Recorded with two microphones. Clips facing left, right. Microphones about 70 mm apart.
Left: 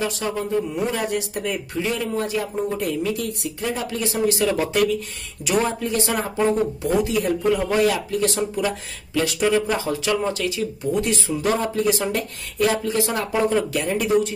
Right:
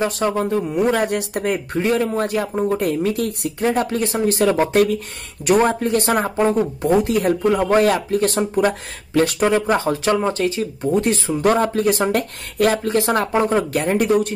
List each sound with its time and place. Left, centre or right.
0.0 s speech: right